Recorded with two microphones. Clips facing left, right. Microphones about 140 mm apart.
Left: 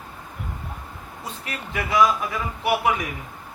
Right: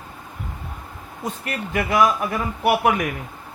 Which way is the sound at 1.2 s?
50° right (ahead or behind).